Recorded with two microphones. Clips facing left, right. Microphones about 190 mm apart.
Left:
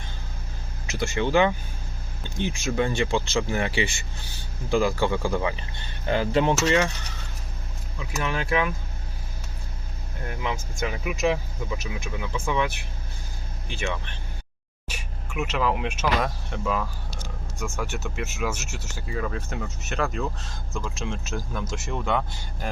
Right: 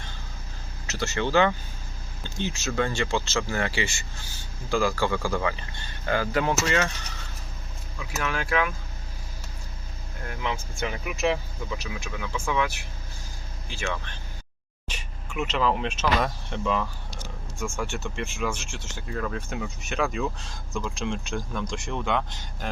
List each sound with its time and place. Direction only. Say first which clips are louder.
0.9 s speech: left 2 dB; 15° left (ahead or behind)
2.6 s a man's voice: left 2 dB; 15° left (ahead or behind)
3.8 s speech: left 2 dB; 60° left (ahead or behind)
4.7 s a man's voice: left 2 dB; 20° left (ahead or behind)
7.9 s a man's voice: left 1 dB; 20° left (ahead or behind)
10.2 s speech: left 1 dB; 15° left (ahead or behind)